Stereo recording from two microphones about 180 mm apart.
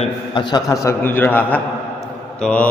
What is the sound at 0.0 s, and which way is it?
Speech, 25° left (ahead or behind).